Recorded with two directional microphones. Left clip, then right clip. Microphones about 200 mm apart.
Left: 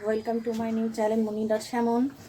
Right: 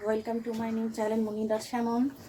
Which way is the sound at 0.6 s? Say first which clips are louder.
Left 4 dB; 5° right (ahead or behind).